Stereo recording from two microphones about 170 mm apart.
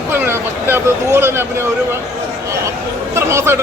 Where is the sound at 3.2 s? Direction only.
15° right (ahead or behind).